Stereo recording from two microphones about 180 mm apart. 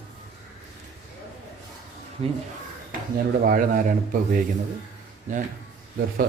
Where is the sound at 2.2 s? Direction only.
35° right (ahead or behind).